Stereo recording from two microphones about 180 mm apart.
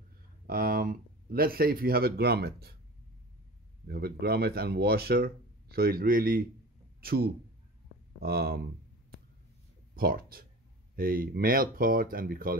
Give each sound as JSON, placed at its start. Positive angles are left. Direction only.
{"t": 0.5, "sound": "speech", "side_deg": -55}
{"t": 3.8, "sound": "a man's voice", "side_deg": -60}
{"t": 9.9, "sound": "speech", "side_deg": -55}